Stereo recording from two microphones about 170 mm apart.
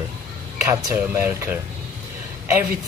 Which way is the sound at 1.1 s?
10° right (ahead or behind).